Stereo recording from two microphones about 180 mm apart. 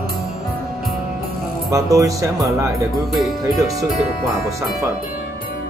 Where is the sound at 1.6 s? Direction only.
20° right (ahead or behind).